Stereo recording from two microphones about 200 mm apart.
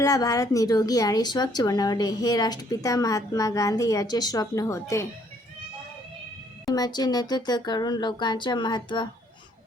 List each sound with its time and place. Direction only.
0.0 s a woman's voice: 15° left (ahead or behind)
6.7 s speech: 20° left (ahead or behind)